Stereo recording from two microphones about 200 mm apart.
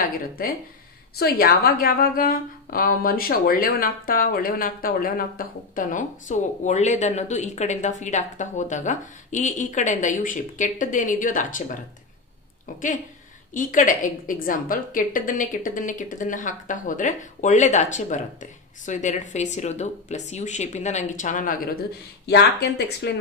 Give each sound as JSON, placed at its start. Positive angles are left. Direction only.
{"t": 1.1, "sound": "a woman's voice", "side_deg": 50}
{"t": 13.5, "sound": "a woman's voice", "side_deg": 40}